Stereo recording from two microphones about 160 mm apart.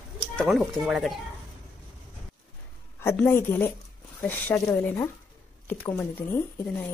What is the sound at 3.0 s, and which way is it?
Speech, 15° left (ahead or behind).